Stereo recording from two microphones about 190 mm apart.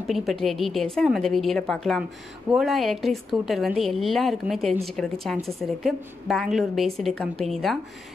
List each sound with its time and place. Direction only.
0.0 s a woman's voice: centre (ahead or behind)